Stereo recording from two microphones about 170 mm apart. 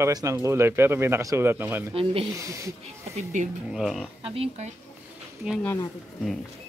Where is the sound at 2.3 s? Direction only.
20° right (ahead or behind).